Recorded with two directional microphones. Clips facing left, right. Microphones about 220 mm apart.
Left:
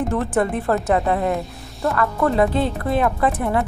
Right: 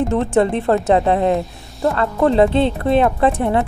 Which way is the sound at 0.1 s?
25° right (ahead or behind).